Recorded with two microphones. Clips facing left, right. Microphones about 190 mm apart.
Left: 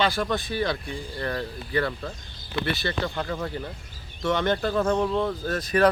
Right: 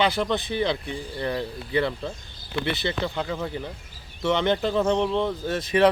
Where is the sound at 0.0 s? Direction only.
20° right (ahead or behind).